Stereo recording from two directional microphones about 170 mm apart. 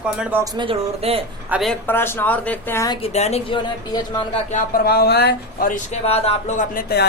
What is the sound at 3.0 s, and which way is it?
Speech, 40° left (ahead or behind).